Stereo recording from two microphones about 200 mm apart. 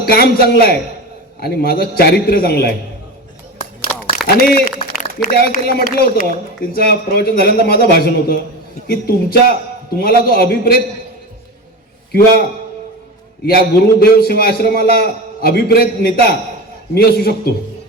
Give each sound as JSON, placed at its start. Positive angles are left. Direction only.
{"t": 0.0, "sound": "a man's voice", "side_deg": 50}
{"t": 4.4, "sound": "a man's voice", "side_deg": 50}
{"t": 13.4, "sound": "a man's voice", "side_deg": 50}